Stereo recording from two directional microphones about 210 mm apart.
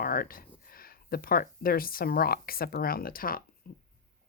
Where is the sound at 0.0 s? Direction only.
45° left (ahead or behind).